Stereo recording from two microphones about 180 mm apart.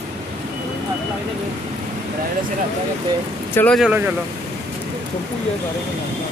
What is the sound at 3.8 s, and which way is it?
Speech, 10° right (ahead or behind).